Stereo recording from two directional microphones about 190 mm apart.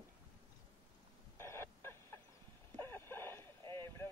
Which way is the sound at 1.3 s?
15° left (ahead or behind).